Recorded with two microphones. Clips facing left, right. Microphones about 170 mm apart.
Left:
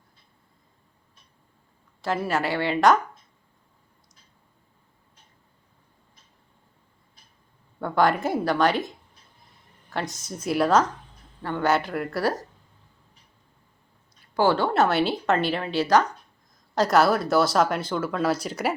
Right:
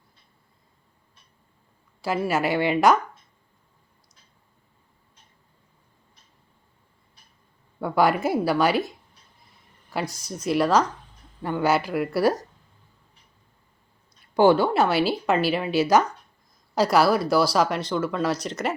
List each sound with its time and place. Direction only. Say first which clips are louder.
2.0 s speech: right 2 dB; 5° right (ahead or behind)
7.8 s speech: right 1 dB; 5° right (ahead or behind)
10.1 s speech: right 1 dB; 25° left (ahead or behind)
10.4 s speech: even; centre (ahead or behind)
14.3 s speech: right 3 dB; 15° right (ahead or behind); by 18.7 s 5° left (ahead or behind)